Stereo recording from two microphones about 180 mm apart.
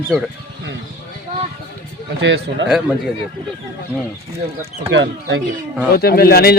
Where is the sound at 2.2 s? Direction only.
90° right.